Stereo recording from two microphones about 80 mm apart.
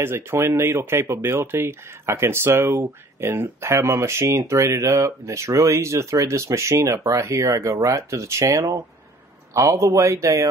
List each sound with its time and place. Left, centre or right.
0.0 s speech: right
2.6 s speech: right
3.2 s speech: right